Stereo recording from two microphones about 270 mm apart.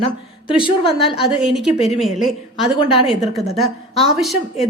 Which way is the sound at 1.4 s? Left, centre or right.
Centre.